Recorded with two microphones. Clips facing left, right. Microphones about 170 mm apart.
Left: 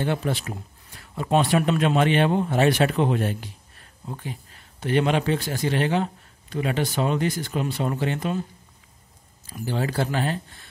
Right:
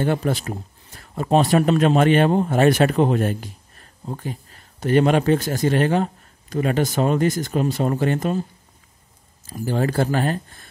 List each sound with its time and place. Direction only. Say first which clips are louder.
0.0 s speech: right 4 dB; 45° right (ahead or behind)
9.5 s speech: right 5 dB; 45° right (ahead or behind)